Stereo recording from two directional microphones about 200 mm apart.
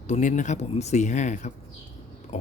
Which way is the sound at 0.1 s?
40° left (ahead or behind).